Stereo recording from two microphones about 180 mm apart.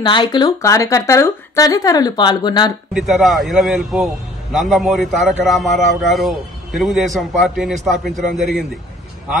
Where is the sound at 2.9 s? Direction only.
Centre (ahead or behind).